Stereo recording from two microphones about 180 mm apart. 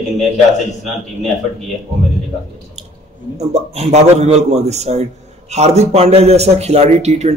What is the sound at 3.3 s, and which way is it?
A man's voice, 40° right (ahead or behind).